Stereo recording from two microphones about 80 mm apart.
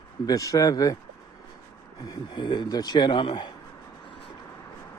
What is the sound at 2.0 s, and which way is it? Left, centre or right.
Speech, left.